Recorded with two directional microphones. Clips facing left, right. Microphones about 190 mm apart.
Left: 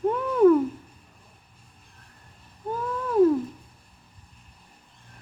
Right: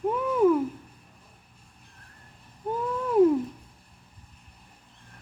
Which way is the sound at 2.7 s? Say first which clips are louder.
Right 1 dB; 20° right (ahead or behind).